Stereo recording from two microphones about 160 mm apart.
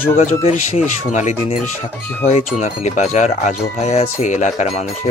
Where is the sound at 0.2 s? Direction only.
40° left (ahead or behind).